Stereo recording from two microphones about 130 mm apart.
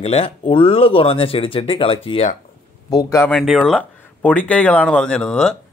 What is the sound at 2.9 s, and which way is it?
Speech, 25° left (ahead or behind).